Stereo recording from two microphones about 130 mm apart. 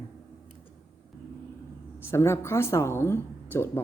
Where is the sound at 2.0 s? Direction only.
20° left (ahead or behind).